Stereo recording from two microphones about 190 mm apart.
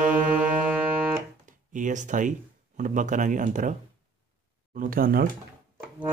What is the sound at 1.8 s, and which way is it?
Speech, 40° right (ahead or behind).